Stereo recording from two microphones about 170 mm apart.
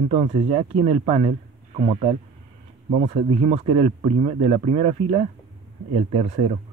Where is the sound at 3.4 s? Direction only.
40° right (ahead or behind).